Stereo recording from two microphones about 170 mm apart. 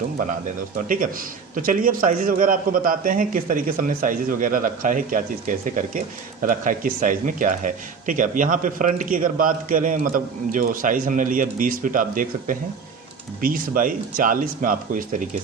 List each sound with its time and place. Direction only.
0.8 s speech: 55° right (ahead or behind)